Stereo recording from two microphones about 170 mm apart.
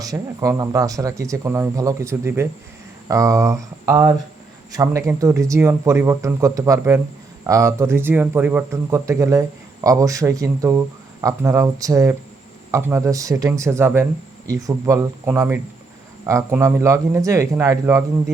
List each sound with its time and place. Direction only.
0.0 s speech: 20° right (ahead or behind)